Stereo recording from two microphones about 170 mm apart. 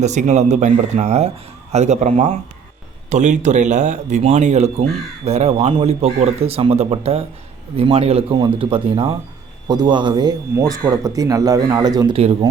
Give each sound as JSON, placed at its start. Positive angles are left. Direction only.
{"t": 0.0, "sound": "a man's voice", "side_deg": -45}
{"t": 12.1, "sound": "speech", "side_deg": -35}